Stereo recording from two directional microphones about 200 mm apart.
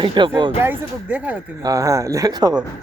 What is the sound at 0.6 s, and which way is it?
Speech, 10° right (ahead or behind).